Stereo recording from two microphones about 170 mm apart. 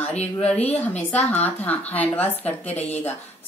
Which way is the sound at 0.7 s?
10° left (ahead or behind).